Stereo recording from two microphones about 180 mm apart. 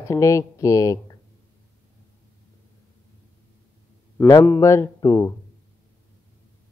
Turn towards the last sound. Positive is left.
turn(degrees=15)  # may be behind; listen again after turning